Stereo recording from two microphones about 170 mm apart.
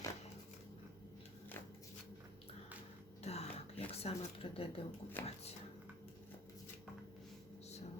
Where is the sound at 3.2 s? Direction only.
40° left (ahead or behind).